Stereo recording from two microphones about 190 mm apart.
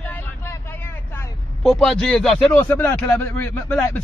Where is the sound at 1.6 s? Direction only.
Centre (ahead or behind).